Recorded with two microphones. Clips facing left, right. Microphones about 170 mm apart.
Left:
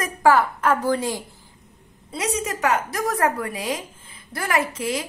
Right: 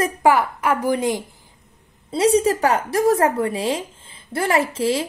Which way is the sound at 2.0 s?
30° right (ahead or behind).